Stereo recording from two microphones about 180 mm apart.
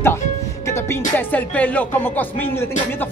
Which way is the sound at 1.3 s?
10° left (ahead or behind).